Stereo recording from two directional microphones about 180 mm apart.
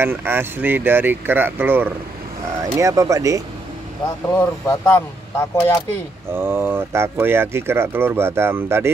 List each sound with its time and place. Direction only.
0.0 s speech: 10° right (ahead or behind)
4.3 s speech: 15° left (ahead or behind)
6.3 s speech: 15° right (ahead or behind)